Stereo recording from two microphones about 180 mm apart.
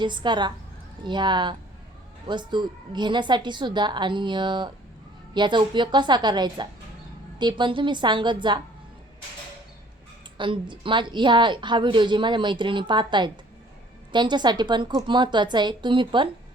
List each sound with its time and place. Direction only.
0.0 s a woman's voice: 25° right (ahead or behind)
10.3 s a woman's voice: 25° right (ahead or behind)